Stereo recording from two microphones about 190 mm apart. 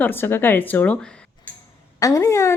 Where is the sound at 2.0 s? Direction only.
15° left (ahead or behind).